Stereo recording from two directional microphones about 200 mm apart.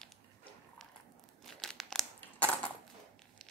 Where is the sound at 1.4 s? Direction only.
Centre (ahead or behind).